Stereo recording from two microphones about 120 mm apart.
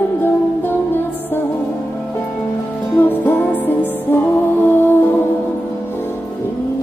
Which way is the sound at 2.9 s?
15° left (ahead or behind).